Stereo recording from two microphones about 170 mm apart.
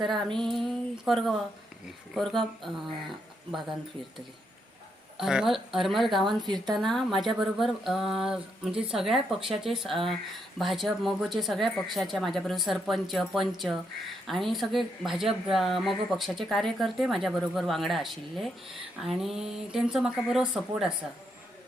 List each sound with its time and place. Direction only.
0.1 s speech: centre (ahead or behind)
5.1 s speech: 5° right (ahead or behind)
6.4 s a woman's voice: 25° right (ahead or behind)
6.8 s speech: centre (ahead or behind)